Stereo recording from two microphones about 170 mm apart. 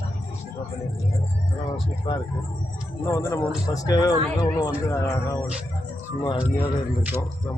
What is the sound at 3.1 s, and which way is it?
Speech, 20° left (ahead or behind).